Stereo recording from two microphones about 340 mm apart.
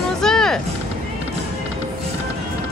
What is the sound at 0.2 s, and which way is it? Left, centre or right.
Music, centre.